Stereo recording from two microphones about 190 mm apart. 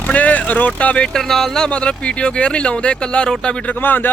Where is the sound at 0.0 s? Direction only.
5° left (ahead or behind).